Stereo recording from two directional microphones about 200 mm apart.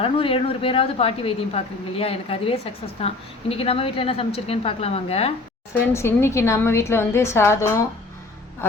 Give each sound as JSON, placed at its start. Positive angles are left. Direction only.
{"t": 0.0, "sound": "a woman's voice", "side_deg": 25}
{"t": 5.9, "sound": "a woman's voice", "side_deg": 15}